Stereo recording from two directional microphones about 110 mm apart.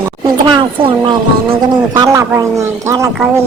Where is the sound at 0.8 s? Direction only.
50° right (ahead or behind).